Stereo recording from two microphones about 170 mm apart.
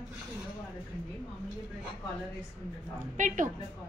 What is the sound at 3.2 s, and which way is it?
Speech, 50° right (ahead or behind).